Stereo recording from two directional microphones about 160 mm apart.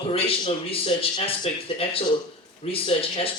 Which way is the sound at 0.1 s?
35° left (ahead or behind).